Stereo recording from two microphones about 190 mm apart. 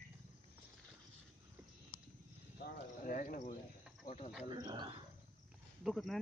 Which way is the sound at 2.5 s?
50° left (ahead or behind).